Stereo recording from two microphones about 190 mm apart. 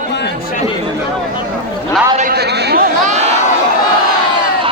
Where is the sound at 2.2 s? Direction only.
55° right (ahead or behind).